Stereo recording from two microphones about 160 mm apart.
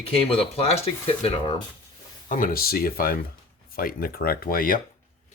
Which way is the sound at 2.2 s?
60° left (ahead or behind).